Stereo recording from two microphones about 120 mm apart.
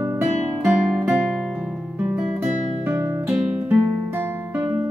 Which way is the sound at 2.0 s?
10° right (ahead or behind).